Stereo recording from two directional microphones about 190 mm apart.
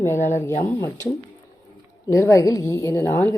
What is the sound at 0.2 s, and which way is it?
Speech, 40° left (ahead or behind).